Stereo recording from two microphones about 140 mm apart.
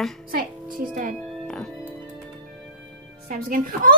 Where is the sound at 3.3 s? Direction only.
90° right.